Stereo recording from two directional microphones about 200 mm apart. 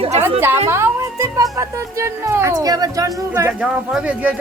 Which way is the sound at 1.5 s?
15° right (ahead or behind).